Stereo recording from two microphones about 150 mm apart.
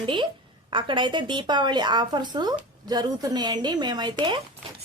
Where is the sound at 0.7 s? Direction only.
35° right (ahead or behind).